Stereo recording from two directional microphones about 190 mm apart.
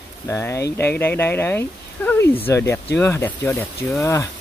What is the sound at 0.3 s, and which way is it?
Speech, 15° left (ahead or behind).